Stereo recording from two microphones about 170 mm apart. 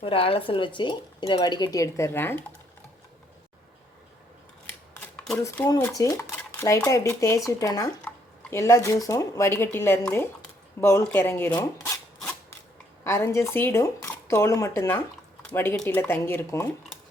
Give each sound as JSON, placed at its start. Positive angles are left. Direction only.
{"t": 0.0, "sound": "speech", "side_deg": 30}
{"t": 5.4, "sound": "speech", "side_deg": 15}
{"t": 13.1, "sound": "speech", "side_deg": 15}